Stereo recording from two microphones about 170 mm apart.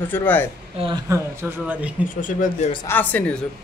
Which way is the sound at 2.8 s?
10° left (ahead or behind).